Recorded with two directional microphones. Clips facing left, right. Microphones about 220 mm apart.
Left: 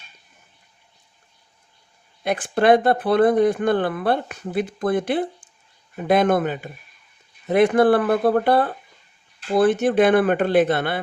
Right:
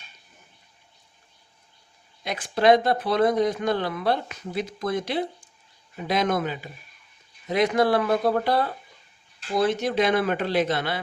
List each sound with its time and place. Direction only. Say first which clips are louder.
2.2 s speech: left 2 dB; 55° left (ahead or behind)